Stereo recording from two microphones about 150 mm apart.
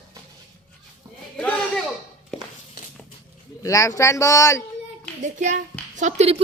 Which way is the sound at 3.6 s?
20° left (ahead or behind).